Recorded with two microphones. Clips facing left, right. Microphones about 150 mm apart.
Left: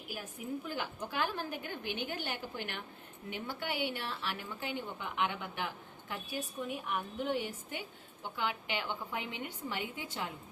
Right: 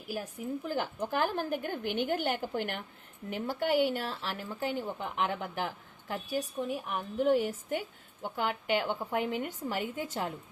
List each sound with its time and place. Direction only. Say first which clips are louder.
0.7 s speech: right 6 dB; 45° right (ahead or behind)